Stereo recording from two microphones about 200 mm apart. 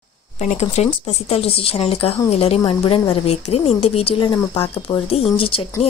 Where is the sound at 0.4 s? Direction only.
35° left (ahead or behind).